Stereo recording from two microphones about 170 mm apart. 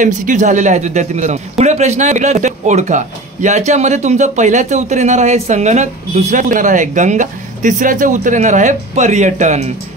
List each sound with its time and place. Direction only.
0.0 s speech: 50° right (ahead or behind)